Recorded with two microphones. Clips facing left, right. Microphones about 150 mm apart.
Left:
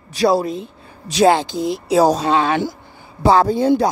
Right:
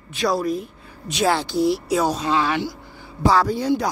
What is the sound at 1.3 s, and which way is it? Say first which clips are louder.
Speech: left 2 dB; 20° left (ahead or behind).